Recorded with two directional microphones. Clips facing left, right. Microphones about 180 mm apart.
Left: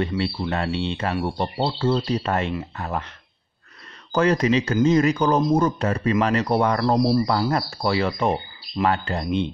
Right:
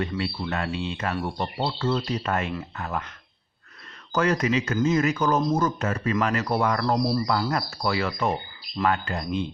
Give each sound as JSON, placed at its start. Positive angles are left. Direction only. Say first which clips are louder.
{"t": 0.2, "sound": "speech", "louder": "left 4 dB", "side_deg": 30}
{"t": 4.1, "sound": "speech", "louder": "left 4 dB", "side_deg": 30}